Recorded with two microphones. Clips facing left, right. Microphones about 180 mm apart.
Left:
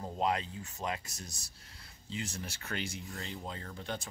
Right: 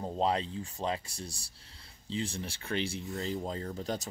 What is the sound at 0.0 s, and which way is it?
Speech, 30° right (ahead or behind).